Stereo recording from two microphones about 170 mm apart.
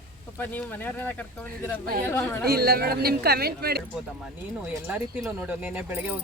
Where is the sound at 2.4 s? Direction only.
65° right (ahead or behind).